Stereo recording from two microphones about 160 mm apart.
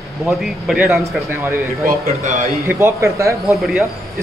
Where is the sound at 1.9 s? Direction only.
50° right (ahead or behind).